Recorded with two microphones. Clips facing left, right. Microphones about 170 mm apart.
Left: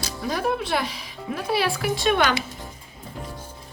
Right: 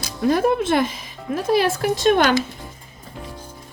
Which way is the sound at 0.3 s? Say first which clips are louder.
Right 7 dB; 55° right (ahead or behind).